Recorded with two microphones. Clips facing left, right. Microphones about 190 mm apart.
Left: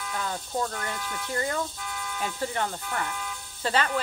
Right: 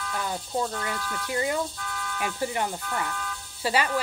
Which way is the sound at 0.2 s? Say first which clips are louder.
Right 1 dB; 10° right (ahead or behind).